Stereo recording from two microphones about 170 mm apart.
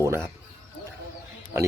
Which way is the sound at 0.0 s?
15° right (ahead or behind).